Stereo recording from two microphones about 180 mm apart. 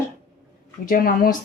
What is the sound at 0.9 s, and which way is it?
Speech, 50° left (ahead or behind).